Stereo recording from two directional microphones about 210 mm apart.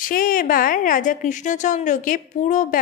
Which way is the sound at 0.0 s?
40° left (ahead or behind).